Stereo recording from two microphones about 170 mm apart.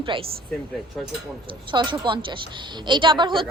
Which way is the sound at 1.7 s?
25° right (ahead or behind).